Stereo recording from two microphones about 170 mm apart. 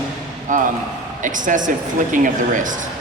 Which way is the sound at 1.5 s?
50° right (ahead or behind).